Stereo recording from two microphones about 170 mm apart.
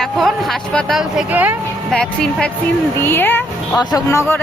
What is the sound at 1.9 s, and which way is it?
Speech, 5° left (ahead or behind).